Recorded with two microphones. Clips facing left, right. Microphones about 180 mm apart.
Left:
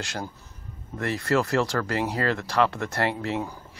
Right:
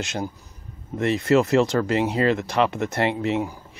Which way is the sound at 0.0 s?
20° right (ahead or behind).